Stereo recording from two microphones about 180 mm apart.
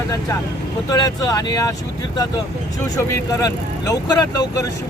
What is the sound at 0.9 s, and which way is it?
Speech, 20° left (ahead or behind).